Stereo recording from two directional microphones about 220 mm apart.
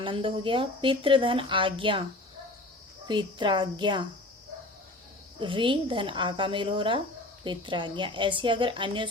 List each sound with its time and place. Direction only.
0.0 s a woman's voice: 20° right (ahead or behind)
3.1 s a woman's voice: 20° right (ahead or behind)
5.4 s a woman's voice: 20° right (ahead or behind)